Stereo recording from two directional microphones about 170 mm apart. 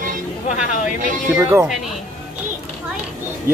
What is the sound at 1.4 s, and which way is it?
Speech, 15° right (ahead or behind).